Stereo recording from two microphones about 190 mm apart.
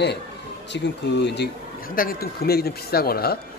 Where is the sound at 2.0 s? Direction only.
50° left (ahead or behind).